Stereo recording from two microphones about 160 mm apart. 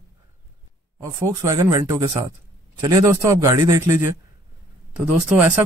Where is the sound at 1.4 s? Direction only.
20° right (ahead or behind).